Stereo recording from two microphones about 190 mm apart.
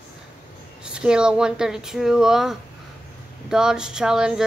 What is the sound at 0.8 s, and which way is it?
Speech, 5° right (ahead or behind).